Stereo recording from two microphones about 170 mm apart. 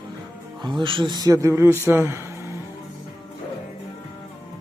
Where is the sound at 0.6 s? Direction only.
25° right (ahead or behind).